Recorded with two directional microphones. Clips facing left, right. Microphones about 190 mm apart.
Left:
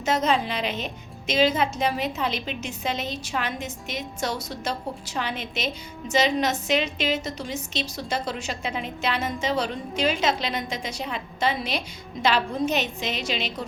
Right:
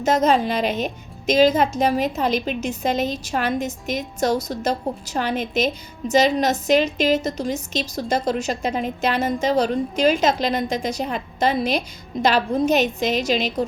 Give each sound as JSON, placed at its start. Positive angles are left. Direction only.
{"t": 0.0, "sound": "a woman's voice", "side_deg": -45}